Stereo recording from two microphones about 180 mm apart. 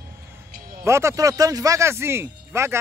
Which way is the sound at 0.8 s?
15° right (ahead or behind).